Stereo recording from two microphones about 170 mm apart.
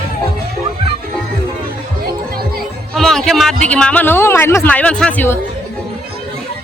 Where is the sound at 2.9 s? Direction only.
Centre (ahead or behind).